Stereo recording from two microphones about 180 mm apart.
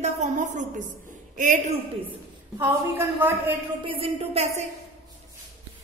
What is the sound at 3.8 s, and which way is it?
Speech, 30° right (ahead or behind).